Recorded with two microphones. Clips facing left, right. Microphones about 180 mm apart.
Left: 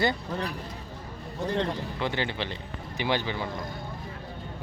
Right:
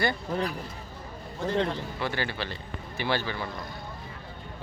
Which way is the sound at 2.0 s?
20° left (ahead or behind).